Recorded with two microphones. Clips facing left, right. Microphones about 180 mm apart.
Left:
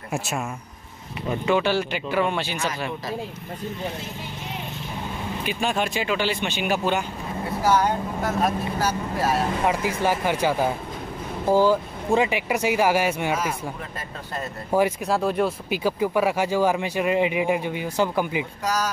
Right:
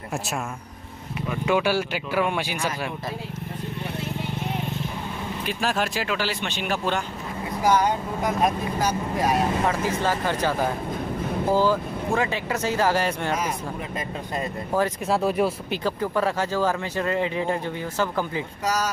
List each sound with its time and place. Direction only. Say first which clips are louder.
1.4 s speech: even; 10° right (ahead or behind)
5.4 s speech: left 1 dB; centre (ahead or behind)
7.6 s speech: even; 15° right (ahead or behind)
9.7 s speech: left 1 dB; 15° left (ahead or behind)
14.7 s speech: left 3 dB; 10° left (ahead or behind)
15.0 s speech: even; 5° right (ahead or behind)
15.7 s speech: left 3 dB; 10° left (ahead or behind)